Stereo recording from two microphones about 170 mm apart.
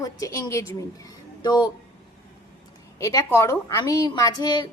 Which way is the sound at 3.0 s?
20° left (ahead or behind).